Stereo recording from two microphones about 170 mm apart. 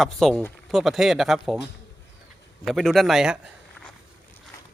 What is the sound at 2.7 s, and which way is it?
Speech, centre (ahead or behind).